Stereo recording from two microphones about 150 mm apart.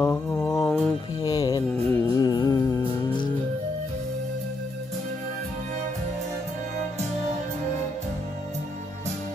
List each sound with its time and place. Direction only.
0.0 s mantra: 25° left (ahead or behind)
0.7 s mantra: 5° left (ahead or behind)
1.2 s music: 25° left (ahead or behind)
1.7 s music: 15° left (ahead or behind)
2.1 s music: 25° left (ahead or behind)